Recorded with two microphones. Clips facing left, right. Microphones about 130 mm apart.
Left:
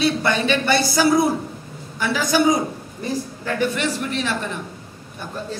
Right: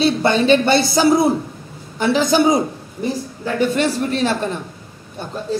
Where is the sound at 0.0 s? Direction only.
25° right (ahead or behind).